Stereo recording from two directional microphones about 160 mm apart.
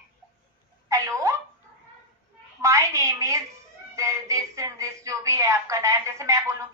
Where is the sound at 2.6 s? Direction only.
20° right (ahead or behind).